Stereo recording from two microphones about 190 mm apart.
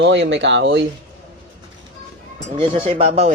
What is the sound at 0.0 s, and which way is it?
Speech, 70° right (ahead or behind).